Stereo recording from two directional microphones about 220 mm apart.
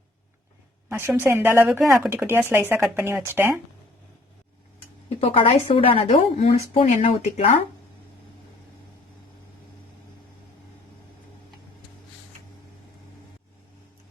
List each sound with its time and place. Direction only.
0.9 s speech: 10° right (ahead or behind)
5.0 s a woman's voice: 25° left (ahead or behind)